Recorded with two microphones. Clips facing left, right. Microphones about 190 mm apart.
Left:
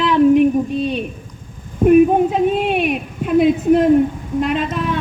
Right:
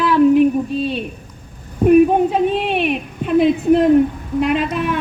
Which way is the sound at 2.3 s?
5° left (ahead or behind).